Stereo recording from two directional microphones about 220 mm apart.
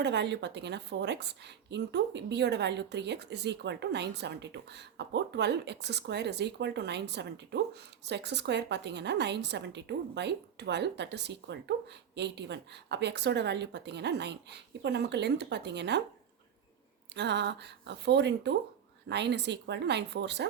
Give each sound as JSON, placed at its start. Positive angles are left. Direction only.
{"t": 0.0, "sound": "a woman's voice", "side_deg": -50}
{"t": 17.2, "sound": "a woman's voice", "side_deg": -50}